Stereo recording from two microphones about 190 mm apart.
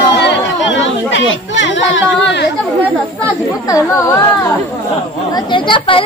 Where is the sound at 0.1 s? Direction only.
65° left (ahead or behind).